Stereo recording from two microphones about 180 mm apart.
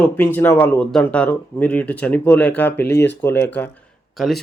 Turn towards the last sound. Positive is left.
turn(degrees=0)  # may be behind; listen again after turning